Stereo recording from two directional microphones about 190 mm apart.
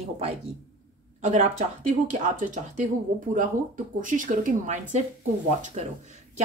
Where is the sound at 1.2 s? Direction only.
40° right (ahead or behind).